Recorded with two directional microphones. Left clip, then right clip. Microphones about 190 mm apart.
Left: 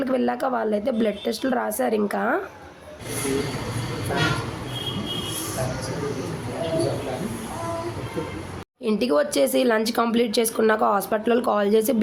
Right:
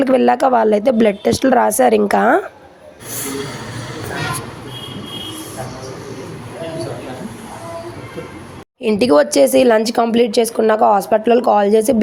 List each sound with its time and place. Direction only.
0.0 s speech: 40° right (ahead or behind)
8.8 s speech: 35° right (ahead or behind)